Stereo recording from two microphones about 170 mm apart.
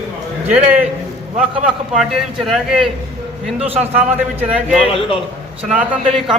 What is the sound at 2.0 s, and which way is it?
Speech, centre (ahead or behind).